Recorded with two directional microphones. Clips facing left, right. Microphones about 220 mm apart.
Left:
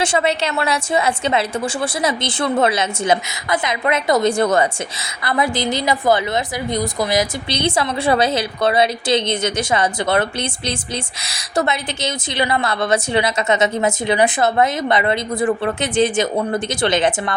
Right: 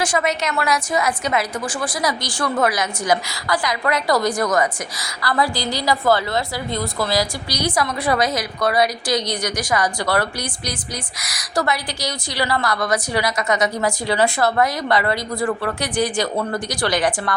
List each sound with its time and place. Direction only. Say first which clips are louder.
0.0 s a woman's voice: left 3 dB; 25° left (ahead or behind)